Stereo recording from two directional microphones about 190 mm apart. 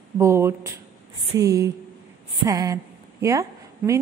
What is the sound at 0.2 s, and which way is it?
A woman's voice, 15° right (ahead or behind).